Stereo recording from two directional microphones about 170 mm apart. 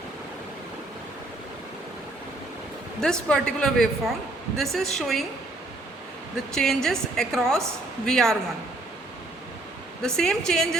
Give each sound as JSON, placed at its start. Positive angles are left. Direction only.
{"t": 3.0, "sound": "a woman's voice", "side_deg": 5}
{"t": 6.3, "sound": "a woman's voice", "side_deg": 5}
{"t": 10.0, "sound": "a woman's voice", "side_deg": 5}